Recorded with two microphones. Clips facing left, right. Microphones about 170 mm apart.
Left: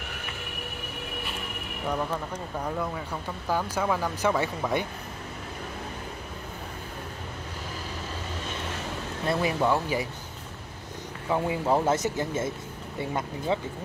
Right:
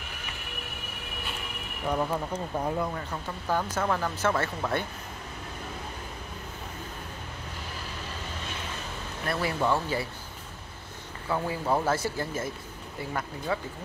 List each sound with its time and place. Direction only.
2.0 s speech: 10° right (ahead or behind)
2.8 s speech: 5° left (ahead or behind)
9.2 s speech: 20° left (ahead or behind)
11.2 s speech: 15° left (ahead or behind)